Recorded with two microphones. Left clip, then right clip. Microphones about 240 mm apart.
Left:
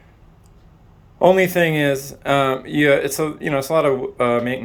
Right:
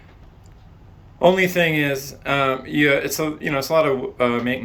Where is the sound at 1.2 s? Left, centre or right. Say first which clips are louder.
Left 2 dB; centre.